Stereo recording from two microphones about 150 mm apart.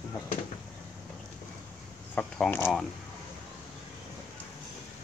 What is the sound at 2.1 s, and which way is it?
Speech, 10° left (ahead or behind).